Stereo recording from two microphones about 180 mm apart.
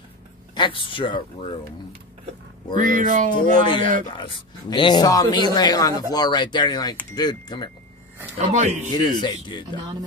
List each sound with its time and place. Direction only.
0.6 s speech: 30° left (ahead or behind)
2.7 s speech: 45° right (ahead or behind)
4.1 s speech: 25° left (ahead or behind)
8.4 s a man's voice: 40° right (ahead or behind)
8.9 s speech: 25° left (ahead or behind)